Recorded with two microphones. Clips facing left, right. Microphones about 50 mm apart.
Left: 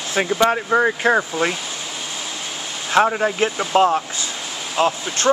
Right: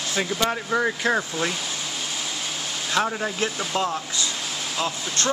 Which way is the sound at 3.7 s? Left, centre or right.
Left.